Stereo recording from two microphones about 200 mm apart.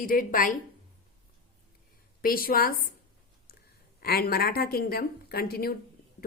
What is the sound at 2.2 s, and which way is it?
Speech, 45° left (ahead or behind).